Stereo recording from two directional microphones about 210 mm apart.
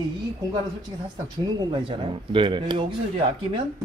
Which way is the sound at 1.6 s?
20° right (ahead or behind).